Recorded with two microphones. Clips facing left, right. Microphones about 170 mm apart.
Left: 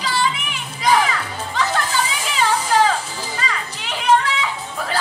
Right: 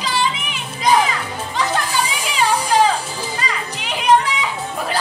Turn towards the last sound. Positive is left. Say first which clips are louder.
# right 2 dB
turn(degrees=-15)  # may be behind; listen again after turning